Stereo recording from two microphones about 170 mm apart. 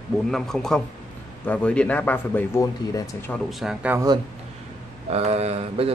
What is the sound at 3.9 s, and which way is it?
Speech, 20° right (ahead or behind).